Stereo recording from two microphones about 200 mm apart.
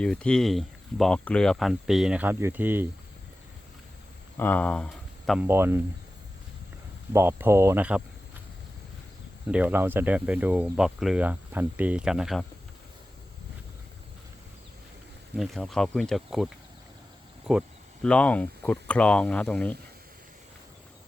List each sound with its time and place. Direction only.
0.0 s speech: 5° left (ahead or behind)
4.4 s speech: 10° left (ahead or behind)
5.5 s speech: 10° right (ahead or behind)
7.1 s speech: 10° right (ahead or behind)
9.5 s speech: 5° right (ahead or behind)
15.4 s speech: centre (ahead or behind)
18.0 s speech: 5° left (ahead or behind)